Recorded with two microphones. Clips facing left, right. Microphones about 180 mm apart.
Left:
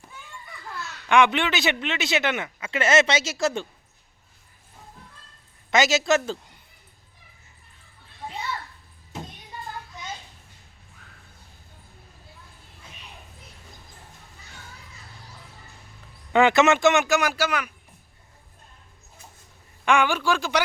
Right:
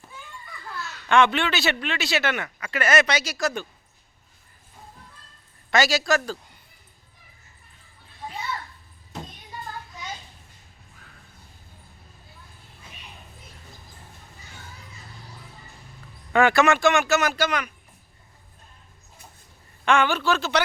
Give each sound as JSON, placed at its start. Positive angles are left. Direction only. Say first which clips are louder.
{"t": 1.0, "sound": "speech", "louder": "even", "side_deg": 15}
{"t": 5.7, "sound": "speech", "louder": "left 1 dB", "side_deg": 20}
{"t": 16.3, "sound": "speech", "louder": "left 1 dB", "side_deg": 20}
{"t": 19.8, "sound": "speech", "louder": "even", "side_deg": 10}